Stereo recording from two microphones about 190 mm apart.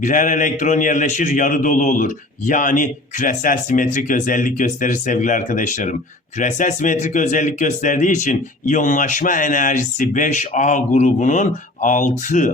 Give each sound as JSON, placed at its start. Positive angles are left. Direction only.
{"t": 0.0, "sound": "a man's voice", "side_deg": 45}